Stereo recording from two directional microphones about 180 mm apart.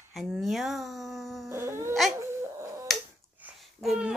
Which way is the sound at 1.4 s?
15° right (ahead or behind).